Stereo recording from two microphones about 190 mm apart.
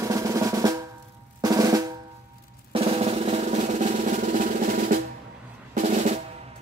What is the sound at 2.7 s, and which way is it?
Drum roll, 30° right (ahead or behind).